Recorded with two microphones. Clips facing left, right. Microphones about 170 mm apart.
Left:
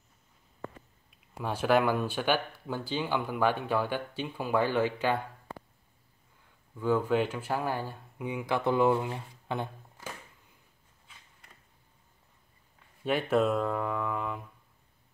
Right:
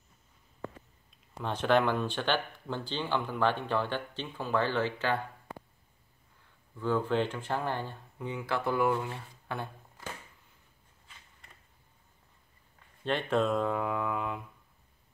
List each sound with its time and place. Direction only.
1.1 s speech: 10° left (ahead or behind)
6.8 s speech: 10° left (ahead or behind)
13.0 s speech: 5° left (ahead or behind)